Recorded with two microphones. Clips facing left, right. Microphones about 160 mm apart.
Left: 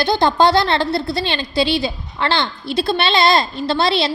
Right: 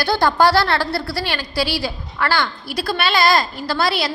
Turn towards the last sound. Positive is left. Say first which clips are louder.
# left 3 dB
turn(degrees=25)  # may be behind; listen again after turning